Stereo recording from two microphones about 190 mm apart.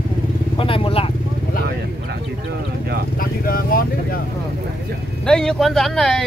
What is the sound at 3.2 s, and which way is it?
Speech, 50° left (ahead or behind).